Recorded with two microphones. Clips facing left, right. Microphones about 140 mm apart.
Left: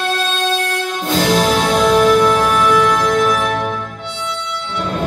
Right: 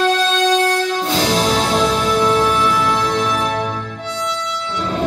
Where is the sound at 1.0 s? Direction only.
45° left (ahead or behind).